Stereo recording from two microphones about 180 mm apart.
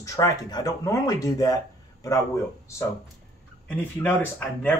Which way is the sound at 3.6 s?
10° left (ahead or behind).